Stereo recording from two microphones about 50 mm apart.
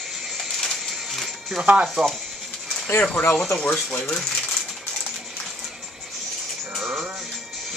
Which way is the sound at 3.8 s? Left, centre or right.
Centre.